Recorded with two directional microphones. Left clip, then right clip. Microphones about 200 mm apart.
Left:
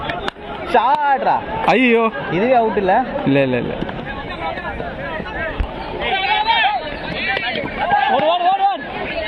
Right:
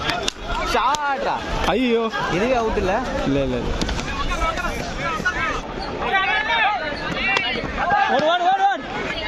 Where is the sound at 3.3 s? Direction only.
Centre (ahead or behind).